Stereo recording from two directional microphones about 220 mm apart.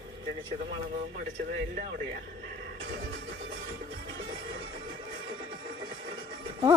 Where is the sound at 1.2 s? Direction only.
45° right (ahead or behind).